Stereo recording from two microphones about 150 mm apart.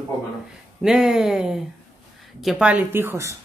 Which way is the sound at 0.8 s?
5° right (ahead or behind).